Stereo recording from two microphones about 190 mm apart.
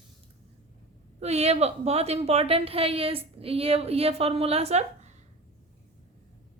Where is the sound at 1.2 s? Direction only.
35° right (ahead or behind).